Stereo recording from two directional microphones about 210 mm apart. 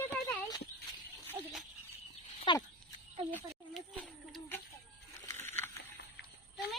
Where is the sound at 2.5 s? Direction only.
25° left (ahead or behind).